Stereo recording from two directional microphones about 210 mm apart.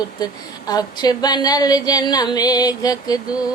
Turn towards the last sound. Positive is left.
turn(degrees=15)  # may be behind; listen again after turning